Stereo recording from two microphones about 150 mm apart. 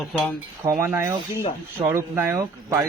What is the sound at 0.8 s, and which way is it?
Speech, 15° right (ahead or behind).